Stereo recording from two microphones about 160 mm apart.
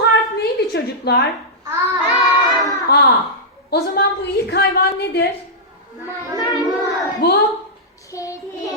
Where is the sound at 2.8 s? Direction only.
90° left.